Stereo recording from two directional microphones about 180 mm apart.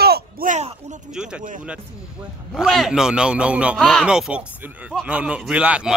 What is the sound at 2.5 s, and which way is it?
Speech, centre (ahead or behind).